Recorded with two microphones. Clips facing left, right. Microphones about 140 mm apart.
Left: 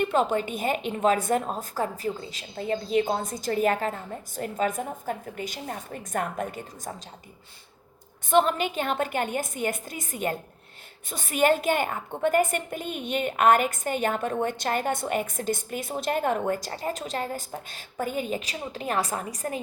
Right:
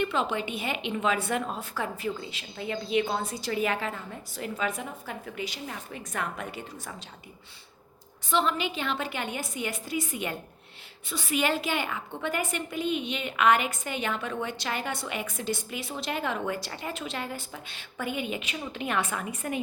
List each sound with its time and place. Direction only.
0.0 s a woman's voice: 45° left (ahead or behind)
8.3 s a woman's voice: 50° left (ahead or behind)